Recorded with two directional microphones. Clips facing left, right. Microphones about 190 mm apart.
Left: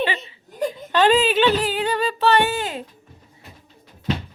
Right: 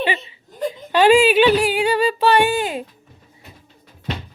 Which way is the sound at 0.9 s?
10° right (ahead or behind).